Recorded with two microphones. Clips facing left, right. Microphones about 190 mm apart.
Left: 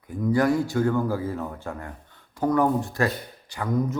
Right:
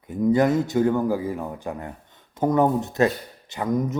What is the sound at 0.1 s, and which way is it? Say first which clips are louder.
Speech: right 3 dB; 20° right (ahead or behind).